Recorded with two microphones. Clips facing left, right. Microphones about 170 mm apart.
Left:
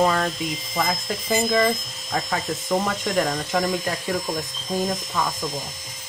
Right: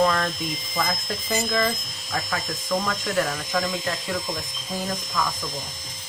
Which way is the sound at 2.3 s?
25° left (ahead or behind).